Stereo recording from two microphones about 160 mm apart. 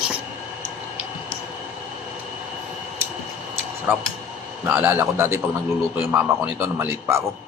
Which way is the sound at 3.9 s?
15° right (ahead or behind).